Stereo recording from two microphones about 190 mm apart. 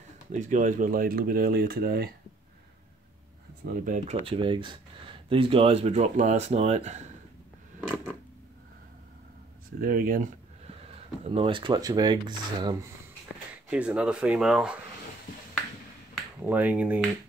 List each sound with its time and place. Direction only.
0.3 s speech: 40° right (ahead or behind)
3.6 s speech: 40° right (ahead or behind)
4.3 s speech: 25° right (ahead or behind)
9.8 s speech: 50° right (ahead or behind)
10.7 s speech: 30° right (ahead or behind)
13.7 s speech: 5° right (ahead or behind)
16.4 s speech: 10° right (ahead or behind)